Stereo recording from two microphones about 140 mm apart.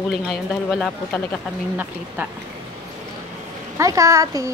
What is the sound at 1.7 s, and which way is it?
Speech, 10° right (ahead or behind).